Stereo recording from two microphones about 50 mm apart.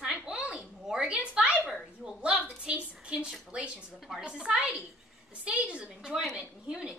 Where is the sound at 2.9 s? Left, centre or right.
Right.